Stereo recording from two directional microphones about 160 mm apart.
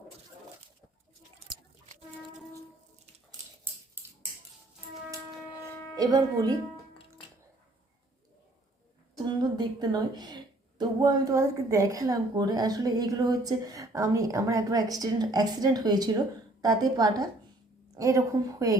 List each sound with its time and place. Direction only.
6.0 s a woman's voice: 25° right (ahead or behind)
9.1 s a woman's voice: 25° right (ahead or behind)
17.9 s a sound: 20° right (ahead or behind)
18.6 s a woman's voice: 20° right (ahead or behind)